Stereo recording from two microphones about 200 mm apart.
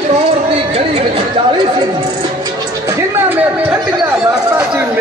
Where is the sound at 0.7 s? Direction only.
30° right (ahead or behind).